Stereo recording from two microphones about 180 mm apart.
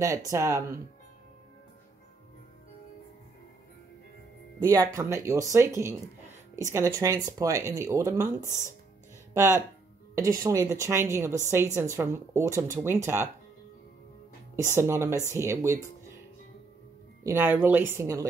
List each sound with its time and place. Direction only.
0.0 s speech: 20° right (ahead or behind)
4.6 s speech: 15° right (ahead or behind)
14.5 s speech: 15° right (ahead or behind)
17.2 s speech: 10° right (ahead or behind)